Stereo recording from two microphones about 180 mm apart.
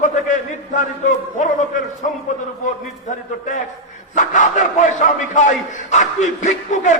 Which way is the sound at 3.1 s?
45° left (ahead or behind).